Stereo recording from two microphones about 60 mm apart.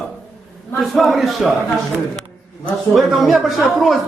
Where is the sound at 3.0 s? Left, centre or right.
Centre.